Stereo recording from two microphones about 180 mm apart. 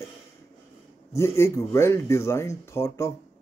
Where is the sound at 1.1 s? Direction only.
15° left (ahead or behind).